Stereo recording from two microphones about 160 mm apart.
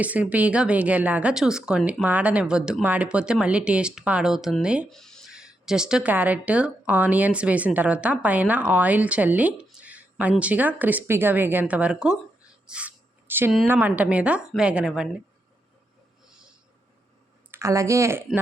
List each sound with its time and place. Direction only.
0.0 s speech: 10° right (ahead or behind)
12.6 s a sound: 5° right (ahead or behind)
13.7 s speech: 10° right (ahead or behind)
17.5 s speech: 20° right (ahead or behind)